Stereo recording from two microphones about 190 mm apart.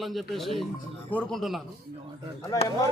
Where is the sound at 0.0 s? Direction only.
Centre (ahead or behind).